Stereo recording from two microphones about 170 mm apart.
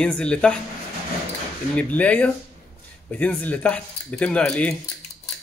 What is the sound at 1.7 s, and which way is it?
Speech, 10° left (ahead or behind).